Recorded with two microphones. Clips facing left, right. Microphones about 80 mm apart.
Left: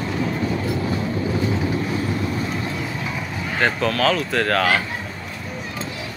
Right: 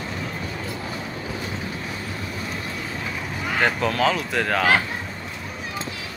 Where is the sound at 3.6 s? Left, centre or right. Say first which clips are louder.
Left 1 dB; centre.